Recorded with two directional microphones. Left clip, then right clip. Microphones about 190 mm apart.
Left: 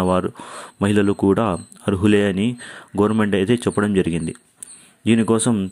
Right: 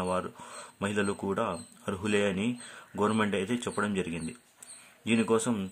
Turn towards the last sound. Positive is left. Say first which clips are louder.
# left 9 dB
turn(degrees=35)  # may be behind; listen again after turning